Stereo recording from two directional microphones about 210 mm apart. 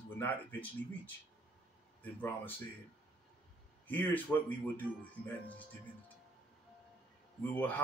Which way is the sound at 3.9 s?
10° left (ahead or behind).